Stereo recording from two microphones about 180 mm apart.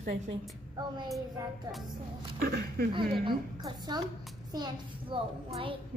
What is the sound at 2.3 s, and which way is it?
Speech, 55° right (ahead or behind).